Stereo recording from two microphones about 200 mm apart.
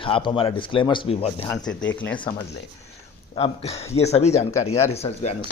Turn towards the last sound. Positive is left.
turn(degrees=30)  # may be behind; listen again after turning